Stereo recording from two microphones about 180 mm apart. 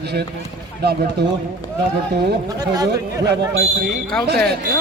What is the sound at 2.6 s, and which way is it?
Speech, 20° right (ahead or behind).